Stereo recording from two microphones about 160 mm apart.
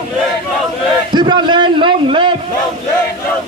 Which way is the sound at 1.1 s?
30° right (ahead or behind).